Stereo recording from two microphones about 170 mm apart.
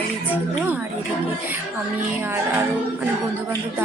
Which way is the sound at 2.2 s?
15° right (ahead or behind).